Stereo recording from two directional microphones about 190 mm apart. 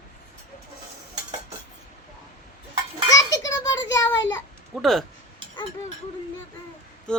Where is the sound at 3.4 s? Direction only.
20° left (ahead or behind).